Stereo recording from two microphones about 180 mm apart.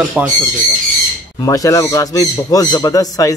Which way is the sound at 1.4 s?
20° left (ahead or behind).